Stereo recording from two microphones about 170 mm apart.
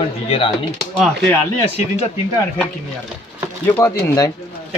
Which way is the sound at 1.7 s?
35° left (ahead or behind).